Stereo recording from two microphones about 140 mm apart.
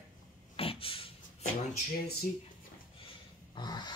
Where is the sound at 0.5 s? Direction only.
40° left (ahead or behind).